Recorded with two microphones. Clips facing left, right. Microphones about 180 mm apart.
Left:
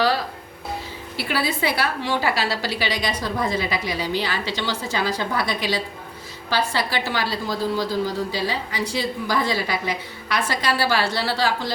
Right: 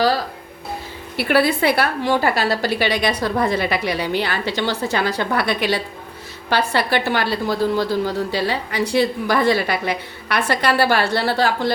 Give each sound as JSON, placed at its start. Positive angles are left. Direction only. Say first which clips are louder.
{"t": 1.1, "sound": "a woman's voice", "louder": "right 8 dB", "side_deg": -60}